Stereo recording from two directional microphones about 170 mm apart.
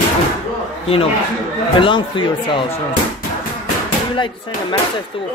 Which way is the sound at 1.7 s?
30° left (ahead or behind).